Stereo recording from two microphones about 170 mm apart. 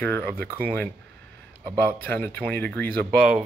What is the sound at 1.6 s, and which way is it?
Speech, 25° right (ahead or behind).